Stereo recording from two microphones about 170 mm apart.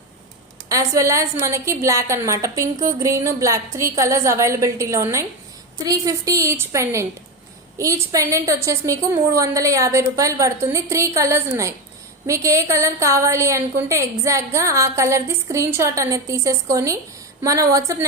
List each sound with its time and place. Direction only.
0.7 s a woman's voice: 20° right (ahead or behind)